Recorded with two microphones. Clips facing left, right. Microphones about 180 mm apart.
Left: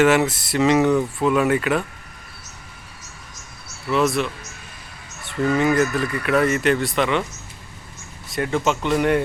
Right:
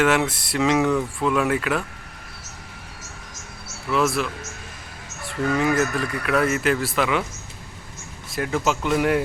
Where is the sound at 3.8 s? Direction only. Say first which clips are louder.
Left 2 dB; centre (ahead or behind).